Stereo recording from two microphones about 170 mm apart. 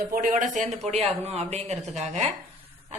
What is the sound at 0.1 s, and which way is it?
A man's voice, 55° right (ahead or behind).